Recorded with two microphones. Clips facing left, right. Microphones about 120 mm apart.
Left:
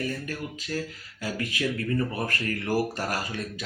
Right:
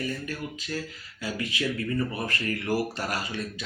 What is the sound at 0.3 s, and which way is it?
Speech, 45° left (ahead or behind).